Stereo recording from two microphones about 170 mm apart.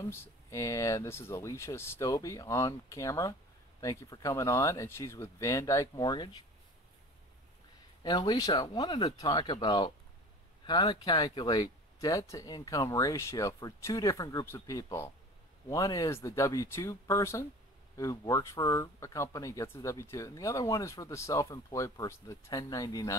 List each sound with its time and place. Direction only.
0.1 s speech: 15° left (ahead or behind)
8.0 s speech: 25° left (ahead or behind)